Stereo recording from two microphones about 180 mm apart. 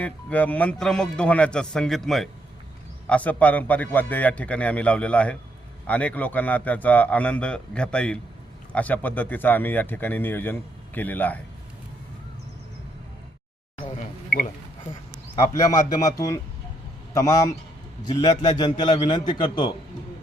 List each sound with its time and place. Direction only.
0.0 s a man's voice: 10° left (ahead or behind)
14.3 s a sound: 55° left (ahead or behind)
16.0 s a man's voice: 20° left (ahead or behind)
18.2 s a man's voice: 25° left (ahead or behind)